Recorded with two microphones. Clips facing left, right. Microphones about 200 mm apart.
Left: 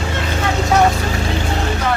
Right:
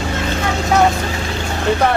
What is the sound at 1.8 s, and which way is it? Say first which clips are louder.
Music: right 4 dB; 60° right (ahead or behind).